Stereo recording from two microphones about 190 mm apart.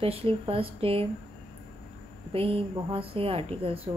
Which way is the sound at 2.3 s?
30° right (ahead or behind).